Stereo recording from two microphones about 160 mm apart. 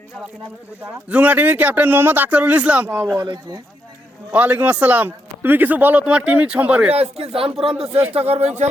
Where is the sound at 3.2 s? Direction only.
25° right (ahead or behind).